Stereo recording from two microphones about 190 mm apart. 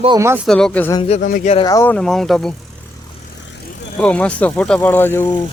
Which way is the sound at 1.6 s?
15° left (ahead or behind).